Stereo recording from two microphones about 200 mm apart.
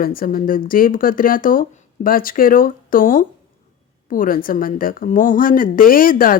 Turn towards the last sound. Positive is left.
turn(degrees=45)  # may be behind; listen again after turning